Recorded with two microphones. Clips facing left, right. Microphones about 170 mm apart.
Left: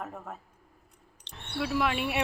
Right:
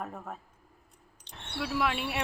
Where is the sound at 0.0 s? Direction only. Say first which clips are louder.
Even; centre (ahead or behind).